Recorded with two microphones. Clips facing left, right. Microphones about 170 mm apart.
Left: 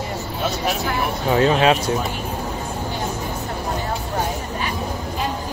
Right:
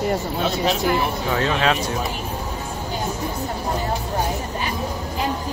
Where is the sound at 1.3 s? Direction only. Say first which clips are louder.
Left 6 dB; 20° left (ahead or behind).